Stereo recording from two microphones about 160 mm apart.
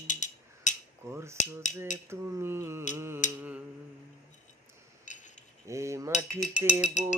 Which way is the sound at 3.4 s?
10° right (ahead or behind).